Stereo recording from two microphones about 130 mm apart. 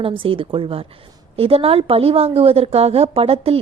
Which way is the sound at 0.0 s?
45° right (ahead or behind).